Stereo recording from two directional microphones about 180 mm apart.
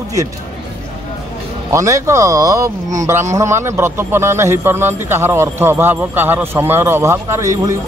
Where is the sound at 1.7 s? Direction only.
15° right (ahead or behind).